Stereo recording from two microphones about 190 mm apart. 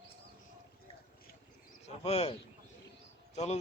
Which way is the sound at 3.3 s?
35° left (ahead or behind).